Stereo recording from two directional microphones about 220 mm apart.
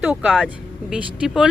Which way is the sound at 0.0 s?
5° right (ahead or behind).